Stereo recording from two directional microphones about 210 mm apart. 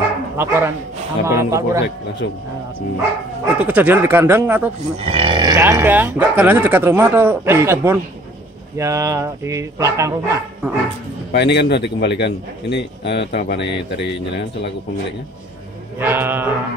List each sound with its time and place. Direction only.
0.4 s speech: 10° right (ahead or behind)
3.5 s speech: 5° right (ahead or behind)
5.0 s speech: 25° right (ahead or behind)
11.3 s a man's voice: 55° left (ahead or behind)
16.0 s speech: 10° right (ahead or behind)